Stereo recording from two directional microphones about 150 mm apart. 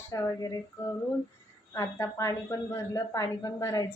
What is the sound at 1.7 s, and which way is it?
Speech, 20° left (ahead or behind).